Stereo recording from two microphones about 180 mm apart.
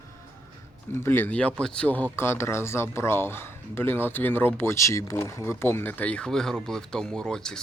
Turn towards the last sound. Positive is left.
turn(degrees=5)  # may be behind; listen again after turning